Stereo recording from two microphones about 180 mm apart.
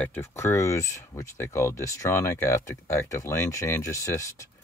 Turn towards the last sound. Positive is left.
turn(degrees=15)  # may be behind; listen again after turning